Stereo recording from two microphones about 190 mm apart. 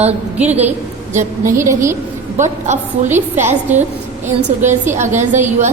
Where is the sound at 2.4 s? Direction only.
40° right (ahead or behind).